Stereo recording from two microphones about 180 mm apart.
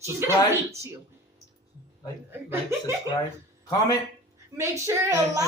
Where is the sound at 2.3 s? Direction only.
10° right (ahead or behind).